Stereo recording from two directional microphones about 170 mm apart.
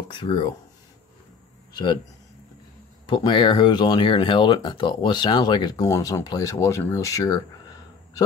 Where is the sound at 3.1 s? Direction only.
25° left (ahead or behind).